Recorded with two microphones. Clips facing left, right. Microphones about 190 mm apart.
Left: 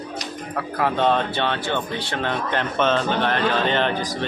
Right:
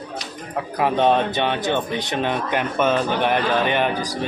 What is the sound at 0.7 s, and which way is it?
Speech, 15° right (ahead or behind).